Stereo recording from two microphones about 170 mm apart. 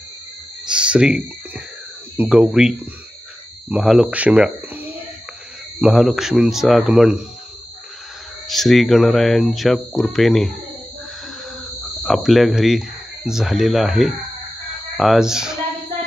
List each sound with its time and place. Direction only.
0.7 s a sound: 5° right (ahead or behind)
2.1 s speech: 5° right (ahead or behind)
8.5 s speech: centre (ahead or behind)
12.0 s speech: centre (ahead or behind)